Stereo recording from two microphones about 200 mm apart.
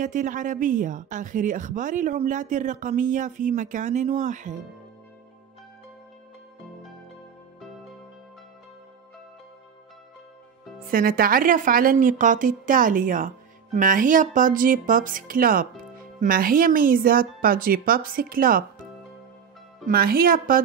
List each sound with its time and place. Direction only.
0.0 s speech: 40° right (ahead or behind)
10.9 s a woman's voice: 45° right (ahead or behind)
19.9 s a woman's voice: 50° right (ahead or behind)